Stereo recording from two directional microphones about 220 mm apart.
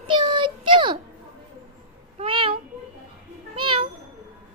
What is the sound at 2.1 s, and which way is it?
Meow, 25° right (ahead or behind).